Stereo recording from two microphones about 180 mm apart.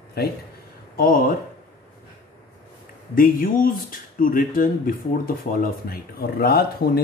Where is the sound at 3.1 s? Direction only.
50° left (ahead or behind).